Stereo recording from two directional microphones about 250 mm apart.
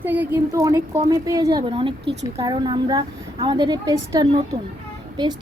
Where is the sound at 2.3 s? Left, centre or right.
Centre.